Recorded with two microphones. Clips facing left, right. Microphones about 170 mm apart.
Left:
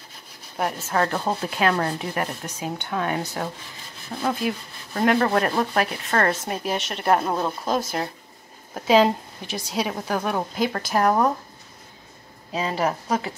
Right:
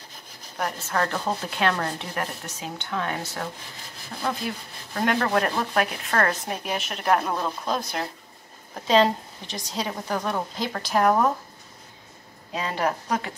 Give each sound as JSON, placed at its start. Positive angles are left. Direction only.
{"t": 0.6, "sound": "speech", "side_deg": 5}
{"t": 12.5, "sound": "speech", "side_deg": 5}